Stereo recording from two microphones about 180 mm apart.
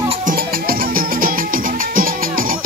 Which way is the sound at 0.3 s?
50° right (ahead or behind).